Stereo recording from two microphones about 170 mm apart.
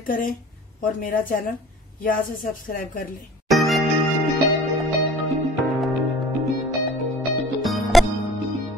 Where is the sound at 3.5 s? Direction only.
Centre (ahead or behind).